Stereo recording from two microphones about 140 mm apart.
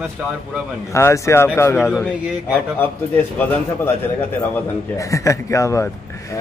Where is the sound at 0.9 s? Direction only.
20° left (ahead or behind).